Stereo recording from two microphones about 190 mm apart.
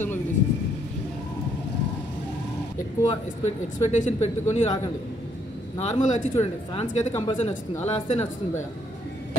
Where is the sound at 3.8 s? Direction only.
35° left (ahead or behind).